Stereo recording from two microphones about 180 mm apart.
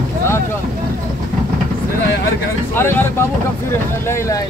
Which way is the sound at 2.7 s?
15° left (ahead or behind).